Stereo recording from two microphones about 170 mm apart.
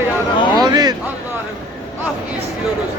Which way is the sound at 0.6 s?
25° right (ahead or behind).